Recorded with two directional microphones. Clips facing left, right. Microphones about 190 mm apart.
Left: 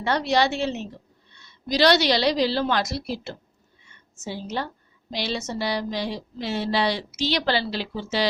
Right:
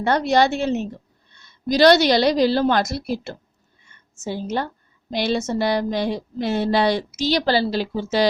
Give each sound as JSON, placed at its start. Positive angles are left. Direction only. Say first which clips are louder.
{"t": 0.0, "sound": "a woman's voice", "louder": "right 4 dB", "side_deg": -50}
{"t": 3.8, "sound": "a sound", "louder": "right 5 dB", "side_deg": -50}
{"t": 5.1, "sound": "speech", "louder": "right 7 dB", "side_deg": -50}